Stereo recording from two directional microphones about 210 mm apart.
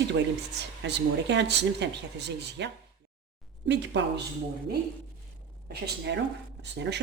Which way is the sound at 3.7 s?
55° right (ahead or behind).